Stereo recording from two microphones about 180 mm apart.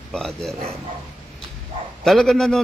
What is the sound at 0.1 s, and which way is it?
Speech, centre (ahead or behind).